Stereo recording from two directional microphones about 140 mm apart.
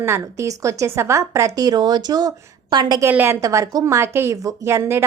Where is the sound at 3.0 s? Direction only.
15° right (ahead or behind).